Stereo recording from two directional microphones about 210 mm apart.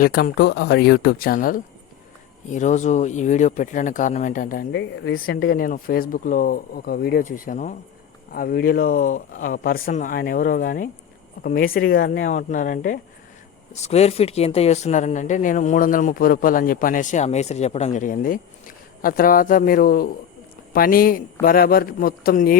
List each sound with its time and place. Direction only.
0.0 s speech: 45° left (ahead or behind)
4.7 s speech: 55° left (ahead or behind)